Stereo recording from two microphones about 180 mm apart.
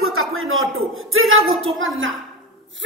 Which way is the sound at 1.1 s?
90° right.